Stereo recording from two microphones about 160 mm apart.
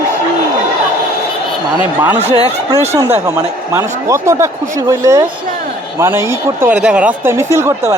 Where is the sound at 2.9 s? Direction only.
15° right (ahead or behind).